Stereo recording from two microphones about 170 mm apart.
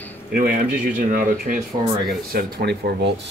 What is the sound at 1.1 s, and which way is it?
Speech, 50° right (ahead or behind).